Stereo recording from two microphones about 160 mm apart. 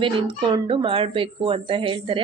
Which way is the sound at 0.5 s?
35° right (ahead or behind).